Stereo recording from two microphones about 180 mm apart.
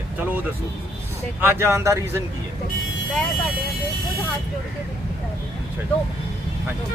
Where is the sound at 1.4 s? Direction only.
10° right (ahead or behind).